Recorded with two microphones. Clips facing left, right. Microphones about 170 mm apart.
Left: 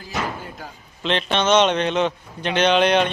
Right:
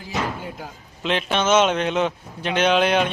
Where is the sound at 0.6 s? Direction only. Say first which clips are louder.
Even; 5° right (ahead or behind).